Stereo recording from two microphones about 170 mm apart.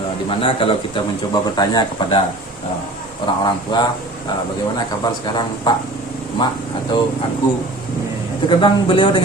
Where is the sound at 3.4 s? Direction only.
25° left (ahead or behind).